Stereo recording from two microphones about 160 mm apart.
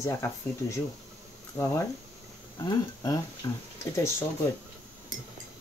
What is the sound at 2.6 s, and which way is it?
Speech, 25° left (ahead or behind).